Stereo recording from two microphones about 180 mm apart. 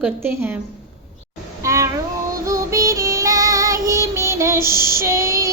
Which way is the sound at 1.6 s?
15° right (ahead or behind).